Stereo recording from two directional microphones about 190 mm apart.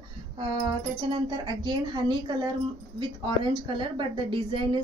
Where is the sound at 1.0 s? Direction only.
25° right (ahead or behind).